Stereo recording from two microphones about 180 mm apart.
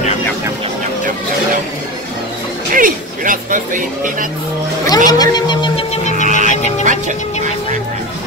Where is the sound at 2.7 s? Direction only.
50° right (ahead or behind).